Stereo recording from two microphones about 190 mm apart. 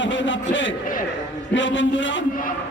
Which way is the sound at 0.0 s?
75° left (ahead or behind).